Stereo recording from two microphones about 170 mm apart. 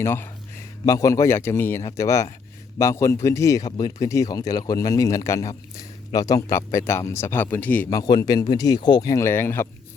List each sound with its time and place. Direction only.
0.0 s a man's voice: 15° left (ahead or behind)